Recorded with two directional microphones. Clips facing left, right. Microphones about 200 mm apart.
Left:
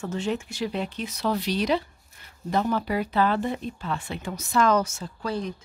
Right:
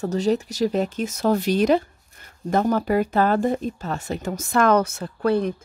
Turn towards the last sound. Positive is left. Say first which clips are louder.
# right 9 dB
turn(degrees=-60)  # may be behind; listen again after turning